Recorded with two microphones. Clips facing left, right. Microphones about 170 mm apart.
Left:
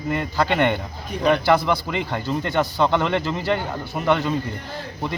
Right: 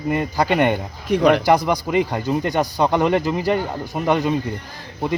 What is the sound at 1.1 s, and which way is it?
Speech, 85° right.